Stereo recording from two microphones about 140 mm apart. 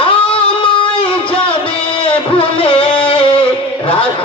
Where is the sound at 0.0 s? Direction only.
40° left (ahead or behind).